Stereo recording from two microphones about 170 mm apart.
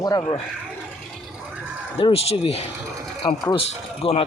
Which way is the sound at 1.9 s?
30° left (ahead or behind).